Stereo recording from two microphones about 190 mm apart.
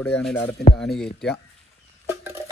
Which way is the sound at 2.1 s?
15° right (ahead or behind).